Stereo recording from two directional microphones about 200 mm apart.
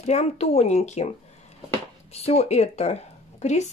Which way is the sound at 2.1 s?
30° left (ahead or behind).